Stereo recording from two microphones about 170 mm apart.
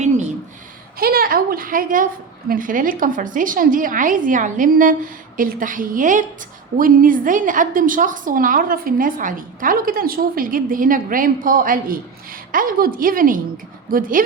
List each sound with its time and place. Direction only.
0.9 s a woman's voice: 60° right (ahead or behind)